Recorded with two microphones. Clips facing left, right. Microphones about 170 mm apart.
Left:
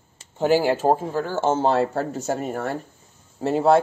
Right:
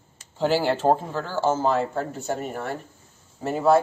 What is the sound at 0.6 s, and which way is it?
Speech, 10° left (ahead or behind).